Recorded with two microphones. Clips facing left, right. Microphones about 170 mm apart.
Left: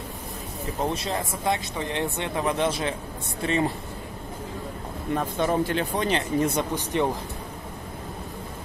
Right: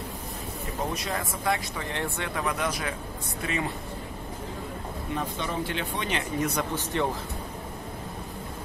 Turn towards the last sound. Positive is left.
turn(degrees=15)  # may be behind; listen again after turning